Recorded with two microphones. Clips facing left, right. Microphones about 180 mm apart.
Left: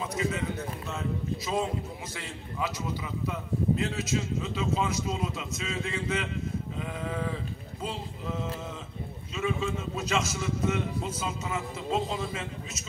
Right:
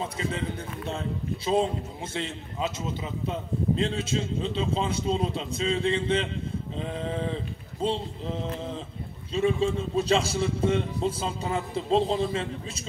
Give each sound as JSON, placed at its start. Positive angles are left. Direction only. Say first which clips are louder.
{"t": 0.0, "sound": "a man's voice", "louder": "even", "side_deg": -30}